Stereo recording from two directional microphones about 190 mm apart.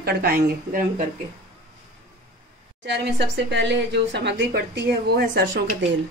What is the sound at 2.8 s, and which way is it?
A woman's voice, 60° right (ahead or behind).